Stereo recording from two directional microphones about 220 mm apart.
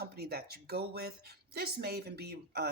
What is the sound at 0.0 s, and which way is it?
Speech, 45° right (ahead or behind).